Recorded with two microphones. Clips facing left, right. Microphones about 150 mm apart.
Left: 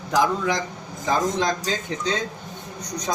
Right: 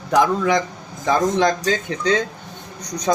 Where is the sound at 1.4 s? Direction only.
70° right (ahead or behind).